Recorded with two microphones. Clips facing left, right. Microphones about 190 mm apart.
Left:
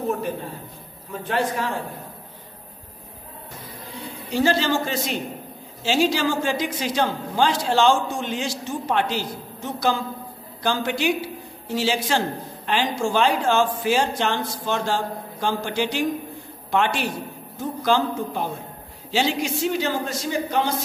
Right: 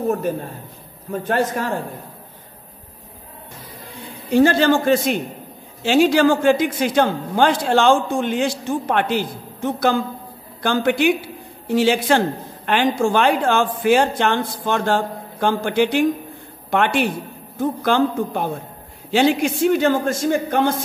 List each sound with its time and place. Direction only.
1.1 s a man's voice: 45° right (ahead or behind)
4.3 s a man's voice: 55° right (ahead or behind)